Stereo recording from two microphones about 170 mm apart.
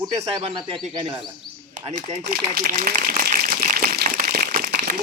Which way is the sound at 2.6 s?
55° right (ahead or behind).